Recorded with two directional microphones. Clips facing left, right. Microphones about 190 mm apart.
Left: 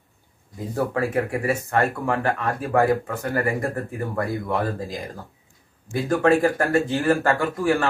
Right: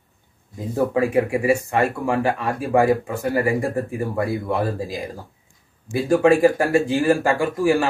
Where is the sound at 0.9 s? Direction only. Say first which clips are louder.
Right 6 dB; 15° right (ahead or behind).